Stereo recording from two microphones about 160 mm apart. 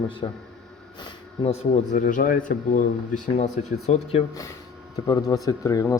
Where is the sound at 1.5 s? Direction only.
45° left (ahead or behind).